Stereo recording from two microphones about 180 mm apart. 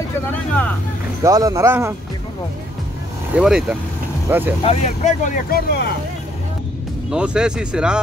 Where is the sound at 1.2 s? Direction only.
20° right (ahead or behind).